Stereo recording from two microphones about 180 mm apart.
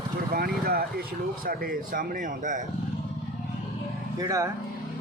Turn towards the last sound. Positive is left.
turn(degrees=-20)  # may be behind; listen again after turning